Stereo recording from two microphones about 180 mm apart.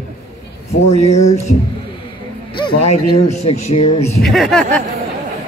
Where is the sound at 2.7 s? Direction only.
35° left (ahead or behind).